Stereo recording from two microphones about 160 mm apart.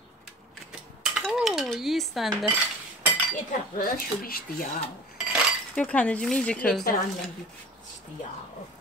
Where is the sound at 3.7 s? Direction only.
65° left (ahead or behind).